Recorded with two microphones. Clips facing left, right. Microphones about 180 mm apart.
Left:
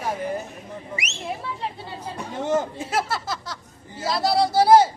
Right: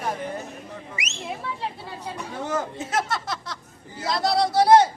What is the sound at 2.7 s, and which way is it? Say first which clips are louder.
A woman's voice: left 1 dB; 5° left (ahead or behind).